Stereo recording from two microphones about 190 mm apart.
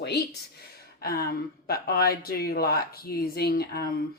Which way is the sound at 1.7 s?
55° left (ahead or behind).